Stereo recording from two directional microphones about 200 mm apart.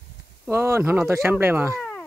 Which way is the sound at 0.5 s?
10° right (ahead or behind).